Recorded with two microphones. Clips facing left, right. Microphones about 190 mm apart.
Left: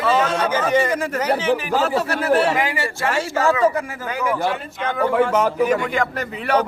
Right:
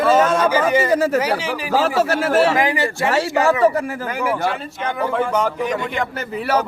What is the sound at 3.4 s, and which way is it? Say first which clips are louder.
Speech: right 1 dB; 30° right (ahead or behind).